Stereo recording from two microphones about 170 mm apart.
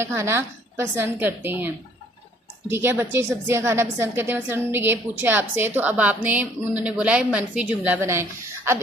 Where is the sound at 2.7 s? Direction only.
15° right (ahead or behind).